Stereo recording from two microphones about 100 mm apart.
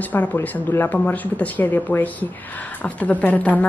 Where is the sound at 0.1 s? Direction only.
15° left (ahead or behind).